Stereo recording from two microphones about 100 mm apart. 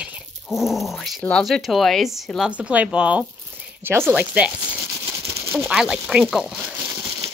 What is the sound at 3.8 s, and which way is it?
Speech, 25° right (ahead or behind).